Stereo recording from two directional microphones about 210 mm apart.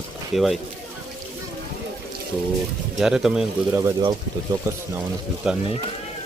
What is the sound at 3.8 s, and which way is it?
Speech, 20° right (ahead or behind).